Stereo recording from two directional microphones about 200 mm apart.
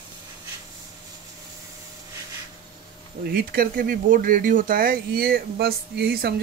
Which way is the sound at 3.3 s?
45° right (ahead or behind).